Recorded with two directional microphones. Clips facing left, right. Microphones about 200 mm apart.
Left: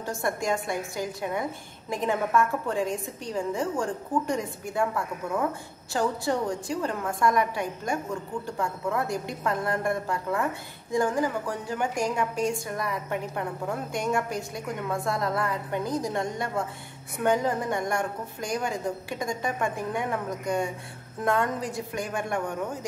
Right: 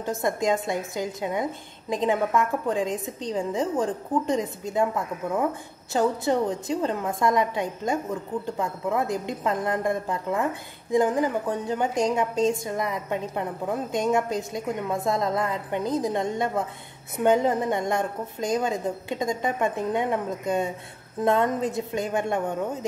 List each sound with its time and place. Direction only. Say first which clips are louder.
0.0 s a woman's voice: right 4 dB; 20° right (ahead or behind)